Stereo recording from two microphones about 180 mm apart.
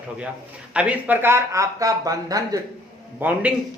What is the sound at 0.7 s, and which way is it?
A man's voice, 10° right (ahead or behind).